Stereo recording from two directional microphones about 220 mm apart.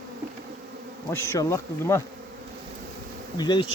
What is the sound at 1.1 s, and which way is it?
Bee, 10° left (ahead or behind).